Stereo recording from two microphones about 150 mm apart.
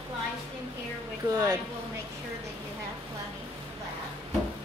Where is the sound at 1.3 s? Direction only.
25° right (ahead or behind).